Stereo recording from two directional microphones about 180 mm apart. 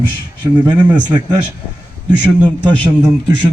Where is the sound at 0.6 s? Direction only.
25° right (ahead or behind).